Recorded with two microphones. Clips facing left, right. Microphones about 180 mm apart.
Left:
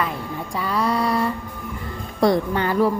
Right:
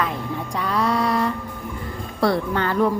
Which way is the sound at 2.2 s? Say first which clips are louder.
Left 2 dB; 15° left (ahead or behind).